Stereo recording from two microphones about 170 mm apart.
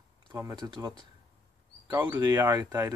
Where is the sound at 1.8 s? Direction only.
15° right (ahead or behind).